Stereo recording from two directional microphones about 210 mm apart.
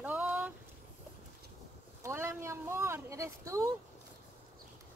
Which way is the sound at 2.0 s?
10° right (ahead or behind).